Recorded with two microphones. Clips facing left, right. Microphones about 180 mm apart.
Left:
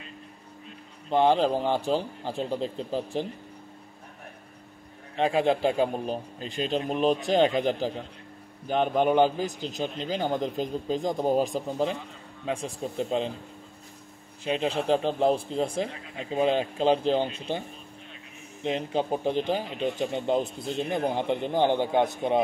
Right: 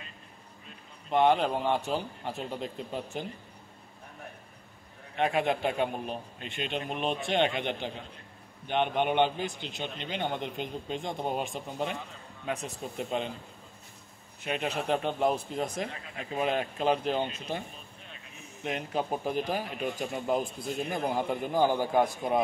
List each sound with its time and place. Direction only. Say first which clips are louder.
1.1 s a man's voice: left 3 dB; 30° left (ahead or behind)
5.1 s a man's voice: left 4 dB; 30° left (ahead or behind)
14.4 s speech: left 5 dB; 30° left (ahead or behind)